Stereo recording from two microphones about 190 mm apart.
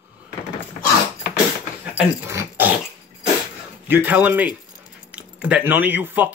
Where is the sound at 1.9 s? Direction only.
10° right (ahead or behind).